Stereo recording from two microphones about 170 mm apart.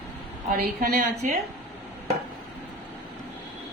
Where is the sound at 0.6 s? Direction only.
65° right (ahead or behind).